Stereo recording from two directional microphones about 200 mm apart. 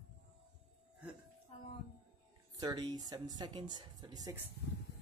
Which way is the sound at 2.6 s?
20° right (ahead or behind).